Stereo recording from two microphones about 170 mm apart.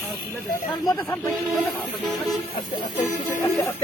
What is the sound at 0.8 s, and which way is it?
Speech, 20° left (ahead or behind).